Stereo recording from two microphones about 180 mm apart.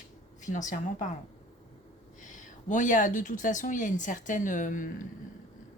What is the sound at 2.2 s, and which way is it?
Speech, 45° left (ahead or behind).